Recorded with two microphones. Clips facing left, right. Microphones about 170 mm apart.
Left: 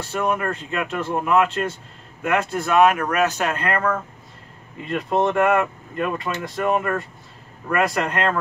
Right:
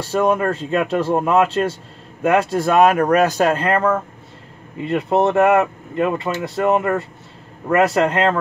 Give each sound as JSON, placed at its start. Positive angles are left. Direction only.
{"t": 0.0, "sound": "speech", "side_deg": -35}